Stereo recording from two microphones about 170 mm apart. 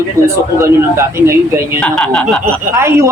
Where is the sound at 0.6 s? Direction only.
15° right (ahead or behind).